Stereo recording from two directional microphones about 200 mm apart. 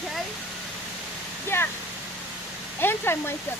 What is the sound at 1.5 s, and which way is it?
Speech, 10° left (ahead or behind).